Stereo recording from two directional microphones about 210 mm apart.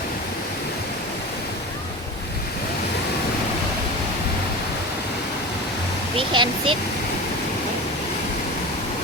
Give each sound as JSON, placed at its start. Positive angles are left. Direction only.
{"t": 6.1, "sound": "speech", "side_deg": -25}